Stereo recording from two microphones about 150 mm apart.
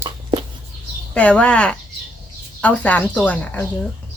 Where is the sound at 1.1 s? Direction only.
10° left (ahead or behind).